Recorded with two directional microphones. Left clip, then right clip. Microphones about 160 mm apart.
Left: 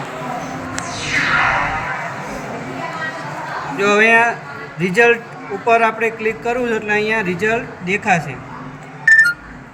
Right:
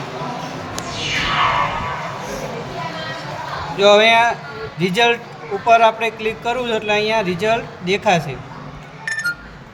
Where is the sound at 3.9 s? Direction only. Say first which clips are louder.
Even; 40° right (ahead or behind).